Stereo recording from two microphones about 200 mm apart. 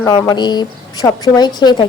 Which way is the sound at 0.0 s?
15° left (ahead or behind).